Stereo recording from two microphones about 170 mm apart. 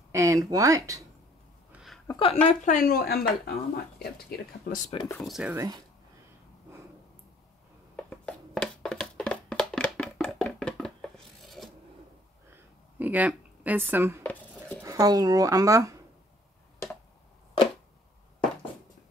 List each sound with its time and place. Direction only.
0.1 s speech: 20° right (ahead or behind)
1.7 s hiccup: 5° right (ahead or behind)
2.0 s a sound: 30° left (ahead or behind)
2.4 s speech: 50° left (ahead or behind); by 3.8 s 65° left (ahead or behind)
4.9 s speech: 20° left (ahead or behind)
5.2 s speech: 5° right (ahead or behind)
7.9 s a sound: 5° left (ahead or behind)
13.0 s speech: 10° right (ahead or behind)
14.2 s a sound: 10° left (ahead or behind)
14.8 s speech: 20° right (ahead or behind)